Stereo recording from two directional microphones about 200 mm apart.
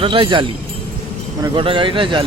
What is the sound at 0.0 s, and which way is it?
A man's voice, 25° right (ahead or behind).